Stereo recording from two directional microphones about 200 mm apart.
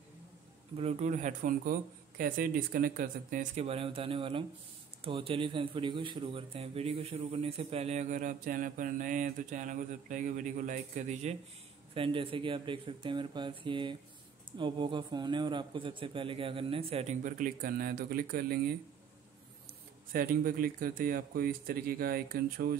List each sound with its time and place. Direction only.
0.7 s speech: 35° right (ahead or behind)
11.9 s a man's voice: 25° right (ahead or behind); by 18.8 s 50° right (ahead or behind)
20.1 s speech: 45° right (ahead or behind)